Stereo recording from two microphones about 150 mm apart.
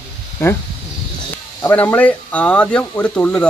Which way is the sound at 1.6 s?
10° left (ahead or behind).